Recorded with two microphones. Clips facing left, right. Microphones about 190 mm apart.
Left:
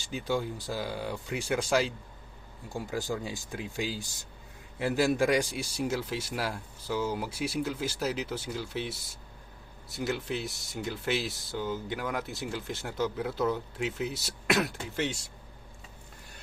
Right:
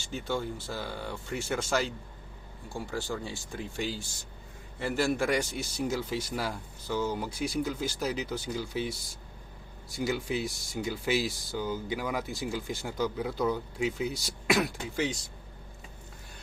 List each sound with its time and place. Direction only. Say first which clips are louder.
0.3 s speech: left 2 dB; 10° left (ahead or behind)
2.6 s speech: left 2 dB; 20° left (ahead or behind); by 15.1 s centre (ahead or behind)